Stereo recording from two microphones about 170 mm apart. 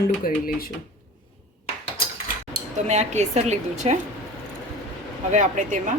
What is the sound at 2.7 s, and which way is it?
A woman's voice, 40° right (ahead or behind).